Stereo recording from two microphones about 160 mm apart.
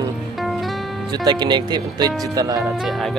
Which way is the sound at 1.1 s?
25° right (ahead or behind).